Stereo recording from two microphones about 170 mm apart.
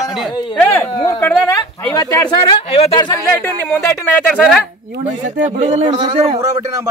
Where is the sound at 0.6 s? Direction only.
10° left (ahead or behind).